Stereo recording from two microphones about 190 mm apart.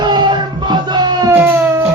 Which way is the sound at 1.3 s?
10° right (ahead or behind).